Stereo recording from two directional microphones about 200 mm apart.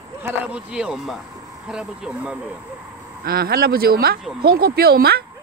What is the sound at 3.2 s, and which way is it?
Speech, 50° right (ahead or behind).